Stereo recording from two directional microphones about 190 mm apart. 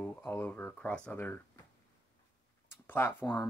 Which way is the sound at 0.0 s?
5° left (ahead or behind).